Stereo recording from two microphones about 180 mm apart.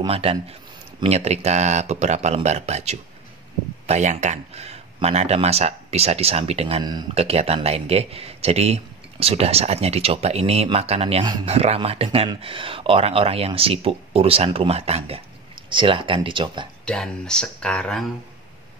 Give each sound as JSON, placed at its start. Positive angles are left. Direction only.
{"t": 0.0, "sound": "speech", "side_deg": -30}
{"t": 6.8, "sound": "speech", "side_deg": -25}
{"t": 16.8, "sound": "speech", "side_deg": 5}